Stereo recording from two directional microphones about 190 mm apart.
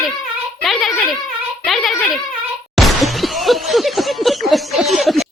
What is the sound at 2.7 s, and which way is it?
Breaking, centre (ahead or behind).